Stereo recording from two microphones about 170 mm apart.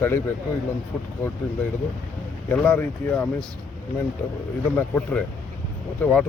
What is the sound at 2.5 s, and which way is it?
Speech, 10° left (ahead or behind).